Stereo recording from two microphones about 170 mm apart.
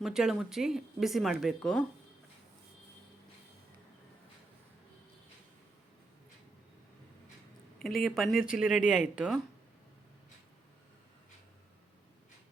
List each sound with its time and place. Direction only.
0.0 s speech: 5° right (ahead or behind)
7.8 s a sound: 60° left (ahead or behind)
8.0 s speech: centre (ahead or behind)